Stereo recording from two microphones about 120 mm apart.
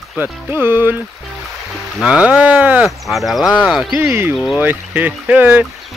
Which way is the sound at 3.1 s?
Centre (ahead or behind).